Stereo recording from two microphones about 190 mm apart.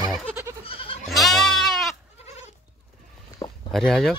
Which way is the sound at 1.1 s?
Centre (ahead or behind).